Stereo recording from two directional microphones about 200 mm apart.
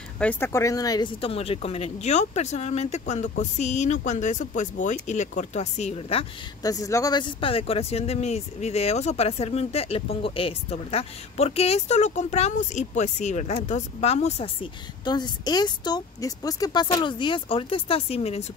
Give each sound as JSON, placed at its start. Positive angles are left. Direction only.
{"t": 0.2, "sound": "speech", "side_deg": 10}
{"t": 6.7, "sound": "speech", "side_deg": 15}